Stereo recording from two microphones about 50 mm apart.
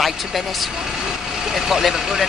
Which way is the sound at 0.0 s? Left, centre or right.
Centre.